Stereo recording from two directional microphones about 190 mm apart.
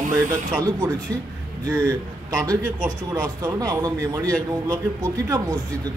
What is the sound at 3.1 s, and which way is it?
A man's voice, 15° right (ahead or behind).